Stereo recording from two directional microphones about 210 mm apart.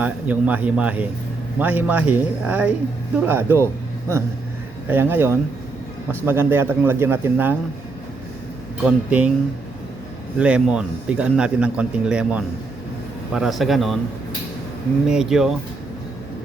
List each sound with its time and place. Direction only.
0.0 s speech: 5° right (ahead or behind)
4.9 s speech: 10° right (ahead or behind)
8.8 s a man's voice: 5° right (ahead or behind)
10.3 s a man's voice: 5° right (ahead or behind)
15.0 s a man's voice: 5° right (ahead or behind)